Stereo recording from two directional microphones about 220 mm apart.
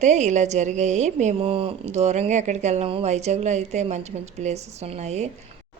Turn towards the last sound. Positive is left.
turn(degrees=-30)  # may be behind; listen again after turning